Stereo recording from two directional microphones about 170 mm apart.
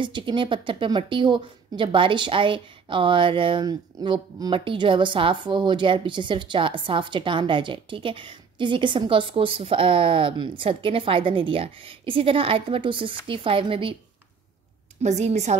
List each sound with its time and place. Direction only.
0.0 s a woman's voice: 30° right (ahead or behind)
15.0 s a woman's voice: 40° right (ahead or behind)